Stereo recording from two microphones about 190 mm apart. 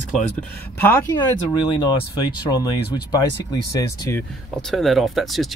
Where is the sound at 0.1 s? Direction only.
10° left (ahead or behind).